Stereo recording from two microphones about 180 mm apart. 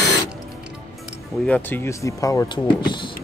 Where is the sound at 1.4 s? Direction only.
10° left (ahead or behind); by 3.1 s 25° left (ahead or behind).